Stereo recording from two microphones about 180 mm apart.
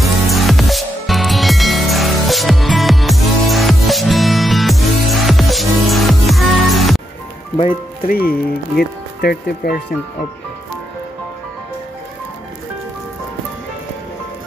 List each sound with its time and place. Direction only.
0.0 s music: centre (ahead or behind)
8.1 s speech: 55° left (ahead or behind)